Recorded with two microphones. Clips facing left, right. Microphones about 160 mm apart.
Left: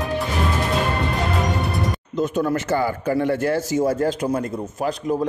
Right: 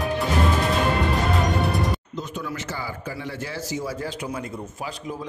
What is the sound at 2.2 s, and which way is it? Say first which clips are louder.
A man's voice: left 10 dB; 50° left (ahead or behind).